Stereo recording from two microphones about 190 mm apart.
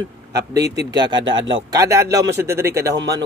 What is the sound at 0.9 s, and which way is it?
Speech, 25° right (ahead or behind).